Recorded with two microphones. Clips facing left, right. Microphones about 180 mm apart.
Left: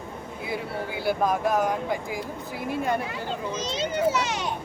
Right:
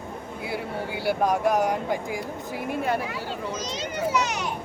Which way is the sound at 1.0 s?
15° right (ahead or behind).